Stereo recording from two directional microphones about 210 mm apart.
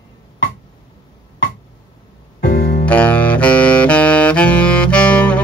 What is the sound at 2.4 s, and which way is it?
Music, 45° left (ahead or behind).